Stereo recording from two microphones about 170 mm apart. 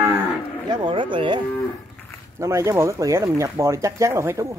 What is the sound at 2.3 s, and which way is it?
Speech, 15° right (ahead or behind).